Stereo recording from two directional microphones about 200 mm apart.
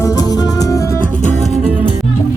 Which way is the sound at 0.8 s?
40° left (ahead or behind).